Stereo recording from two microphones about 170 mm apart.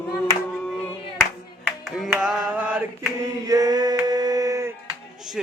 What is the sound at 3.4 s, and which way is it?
Chant, 20° right (ahead or behind).